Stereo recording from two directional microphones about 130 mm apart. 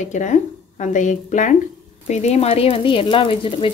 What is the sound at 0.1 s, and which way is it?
Speech, 70° left (ahead or behind).